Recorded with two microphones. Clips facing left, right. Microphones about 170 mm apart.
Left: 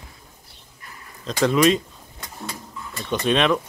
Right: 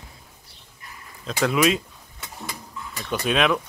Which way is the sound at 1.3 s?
5° right (ahead or behind).